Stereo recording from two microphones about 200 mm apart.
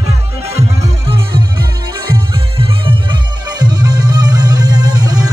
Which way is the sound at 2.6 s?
25° right (ahead or behind).